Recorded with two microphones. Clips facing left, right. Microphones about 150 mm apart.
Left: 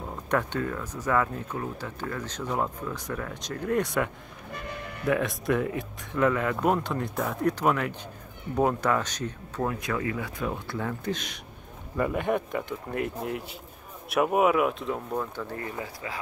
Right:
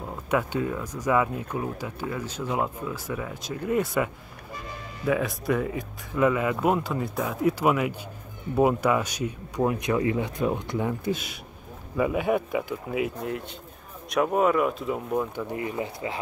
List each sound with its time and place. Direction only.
0.1 s speech: 5° right (ahead or behind)
4.5 s vehicle: 65° left (ahead or behind)
5.0 s speech: centre (ahead or behind); by 16.2 s 25° right (ahead or behind)